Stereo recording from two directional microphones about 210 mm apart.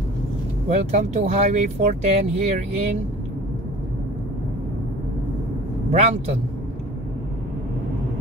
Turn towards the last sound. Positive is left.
turn(degrees=-30)  # may be behind; listen again after turning